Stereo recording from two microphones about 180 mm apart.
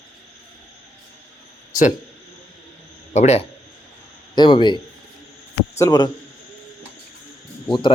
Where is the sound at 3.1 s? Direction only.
40° left (ahead or behind).